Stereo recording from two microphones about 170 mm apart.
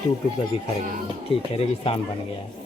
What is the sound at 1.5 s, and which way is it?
Speech, 35° left (ahead or behind).